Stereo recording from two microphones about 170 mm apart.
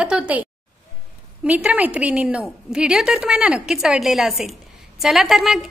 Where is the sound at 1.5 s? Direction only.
10° right (ahead or behind).